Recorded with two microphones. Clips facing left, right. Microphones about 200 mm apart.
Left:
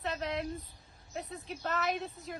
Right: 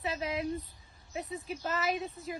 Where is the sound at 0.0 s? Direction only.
Centre (ahead or behind).